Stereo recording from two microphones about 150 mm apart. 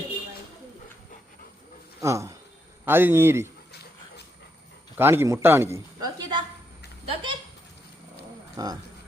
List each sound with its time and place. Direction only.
2.0 s speech: 20° right (ahead or behind)
4.9 s a man's voice: 15° right (ahead or behind)
7.1 s a sound: 35° right (ahead or behind)
8.5 s speech: 25° right (ahead or behind)